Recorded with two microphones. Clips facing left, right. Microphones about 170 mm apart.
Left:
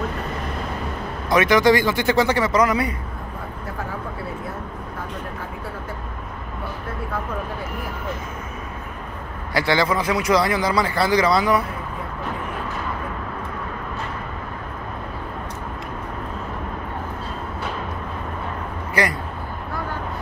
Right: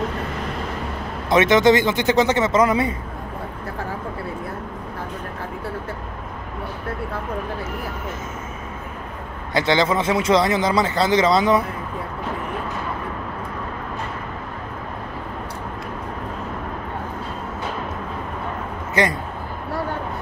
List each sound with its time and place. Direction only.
1.3 s speech: 25° right (ahead or behind)
9.5 s speech: 20° right (ahead or behind)
19.0 s speech: 20° right (ahead or behind)